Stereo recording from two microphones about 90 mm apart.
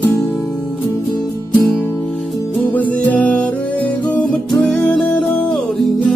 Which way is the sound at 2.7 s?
20° left (ahead or behind).